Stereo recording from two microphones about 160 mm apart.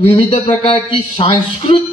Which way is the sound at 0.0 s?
35° left (ahead or behind).